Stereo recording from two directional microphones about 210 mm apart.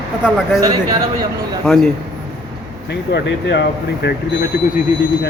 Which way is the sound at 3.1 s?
55° left (ahead or behind).